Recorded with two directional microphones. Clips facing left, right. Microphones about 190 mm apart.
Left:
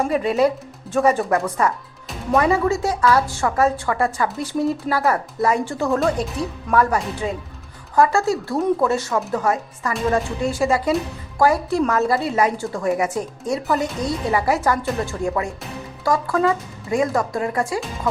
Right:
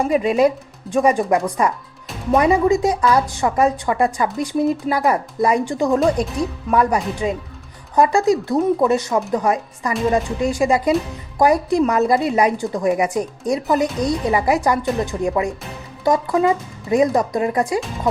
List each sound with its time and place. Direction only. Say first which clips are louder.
0.1 s speech: right 2 dB; 10° right (ahead or behind)